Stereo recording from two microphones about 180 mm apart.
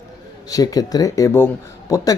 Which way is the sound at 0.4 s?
20° left (ahead or behind).